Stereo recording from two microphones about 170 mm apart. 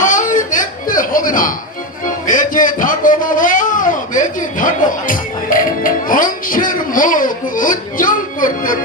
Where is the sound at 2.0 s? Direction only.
50° left (ahead or behind).